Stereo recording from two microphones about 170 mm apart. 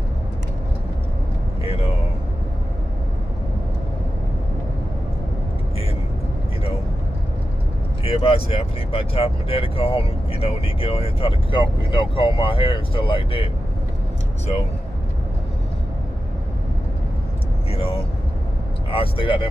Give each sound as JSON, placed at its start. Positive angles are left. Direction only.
{"t": 1.6, "sound": "a sound", "side_deg": 35}
{"t": 8.0, "sound": "speech", "side_deg": 35}
{"t": 17.6, "sound": "vehicle", "side_deg": 35}
{"t": 18.9, "sound": "speech", "side_deg": 30}